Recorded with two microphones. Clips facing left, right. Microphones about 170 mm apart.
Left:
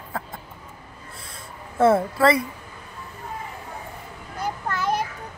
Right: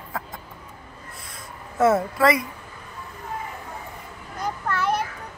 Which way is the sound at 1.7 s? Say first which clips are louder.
Left 1 dB; 30° left (ahead or behind).